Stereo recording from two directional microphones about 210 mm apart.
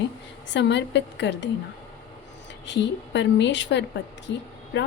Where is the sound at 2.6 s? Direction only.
60° left (ahead or behind).